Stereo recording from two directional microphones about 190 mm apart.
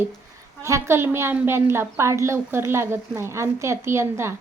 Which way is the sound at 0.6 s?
15° right (ahead or behind).